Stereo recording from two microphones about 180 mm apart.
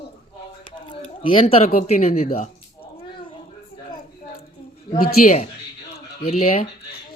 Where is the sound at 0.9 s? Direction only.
30° left (ahead or behind).